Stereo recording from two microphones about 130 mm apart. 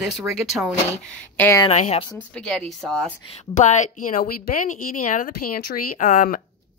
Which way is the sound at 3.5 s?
70° left (ahead or behind).